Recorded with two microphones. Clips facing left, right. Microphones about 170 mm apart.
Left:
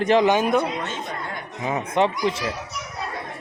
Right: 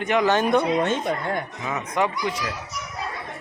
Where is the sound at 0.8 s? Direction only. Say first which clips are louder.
Right 7 dB; 55° right (ahead or behind).